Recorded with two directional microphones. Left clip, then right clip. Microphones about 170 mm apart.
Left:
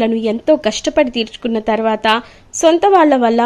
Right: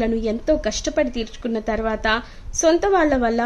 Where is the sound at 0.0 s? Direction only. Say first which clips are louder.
Left 6 dB; 20° left (ahead or behind).